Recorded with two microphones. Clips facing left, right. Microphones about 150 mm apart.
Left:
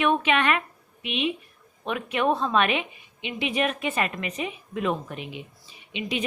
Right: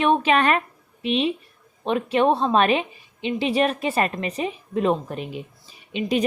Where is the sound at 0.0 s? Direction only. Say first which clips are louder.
Right 4 dB; 35° right (ahead or behind).